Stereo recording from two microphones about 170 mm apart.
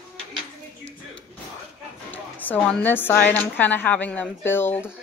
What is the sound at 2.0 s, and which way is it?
A woman's voice, 10° left (ahead or behind).